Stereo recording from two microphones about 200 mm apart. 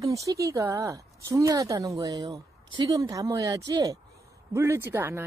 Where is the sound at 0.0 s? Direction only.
15° right (ahead or behind).